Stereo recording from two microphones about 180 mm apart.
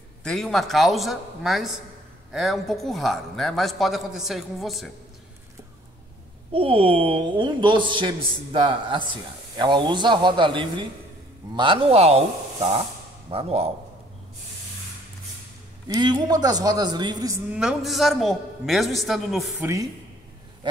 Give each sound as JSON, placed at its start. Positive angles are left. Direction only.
{"t": 0.2, "sound": "a man's voice", "side_deg": 5}
{"t": 6.5, "sound": "a woman's voice", "side_deg": -30}
{"t": 13.3, "sound": "a man's voice", "side_deg": -35}
{"t": 15.9, "sound": "a woman's voice", "side_deg": -25}
{"t": 17.5, "sound": "a man's voice", "side_deg": -5}
{"t": 19.6, "sound": "speech", "side_deg": -15}